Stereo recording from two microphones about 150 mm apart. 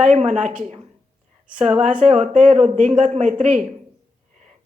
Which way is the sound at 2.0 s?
50° right (ahead or behind).